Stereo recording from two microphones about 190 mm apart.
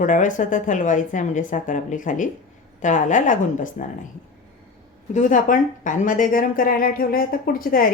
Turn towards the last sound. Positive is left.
turn(degrees=50)  # may be behind; listen again after turning